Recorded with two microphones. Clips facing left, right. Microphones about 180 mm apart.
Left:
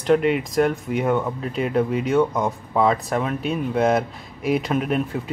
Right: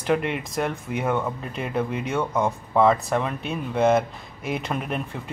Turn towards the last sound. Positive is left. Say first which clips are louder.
# left 6 dB
turn(degrees=0)  # may be behind; listen again after turning